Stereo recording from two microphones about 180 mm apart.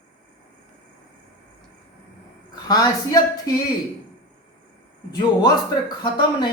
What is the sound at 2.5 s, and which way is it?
A woman's voice, 20° left (ahead or behind).